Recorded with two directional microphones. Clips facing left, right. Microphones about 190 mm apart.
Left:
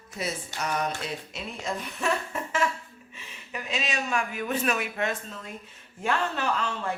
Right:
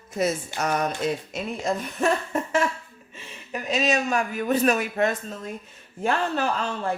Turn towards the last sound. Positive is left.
turn(degrees=-35)  # may be behind; listen again after turning